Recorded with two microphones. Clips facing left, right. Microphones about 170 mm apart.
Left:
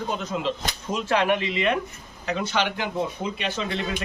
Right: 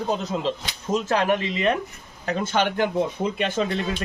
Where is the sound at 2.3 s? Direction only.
45° right (ahead or behind).